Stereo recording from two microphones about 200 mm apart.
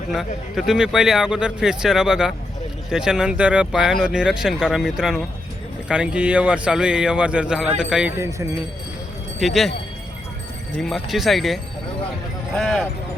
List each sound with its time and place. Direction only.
0.1 s a man's voice: centre (ahead or behind)
8.2 s speech: 15° right (ahead or behind)
9.4 s a man's voice: centre (ahead or behind)
10.8 s a man's voice: centre (ahead or behind)